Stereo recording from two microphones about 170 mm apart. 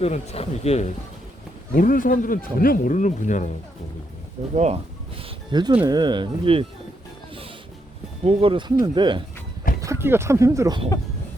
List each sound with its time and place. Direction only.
0.0 s speech: 40° left (ahead or behind)
1.7 s speech: 55° left (ahead or behind)
4.5 s speech: 40° right (ahead or behind)
8.2 s speech: 35° right (ahead or behind)
9.8 s speech: 15° right (ahead or behind)